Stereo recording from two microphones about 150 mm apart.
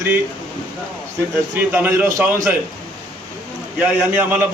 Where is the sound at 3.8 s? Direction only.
10° right (ahead or behind).